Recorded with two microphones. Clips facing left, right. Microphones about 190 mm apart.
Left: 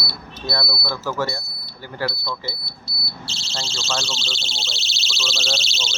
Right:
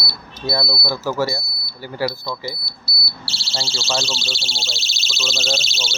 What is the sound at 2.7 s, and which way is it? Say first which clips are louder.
Smoke detector: even; 75° right (ahead or behind).